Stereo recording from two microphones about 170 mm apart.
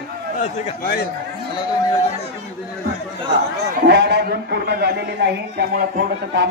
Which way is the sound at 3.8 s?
85° right.